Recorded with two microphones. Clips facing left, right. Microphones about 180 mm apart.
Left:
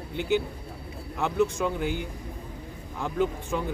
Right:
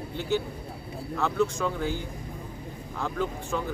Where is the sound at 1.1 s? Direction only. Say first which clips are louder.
Left 1 dB; 15° left (ahead or behind).